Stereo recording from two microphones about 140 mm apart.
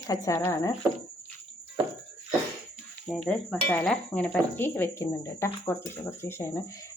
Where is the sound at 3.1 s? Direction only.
5° left (ahead or behind).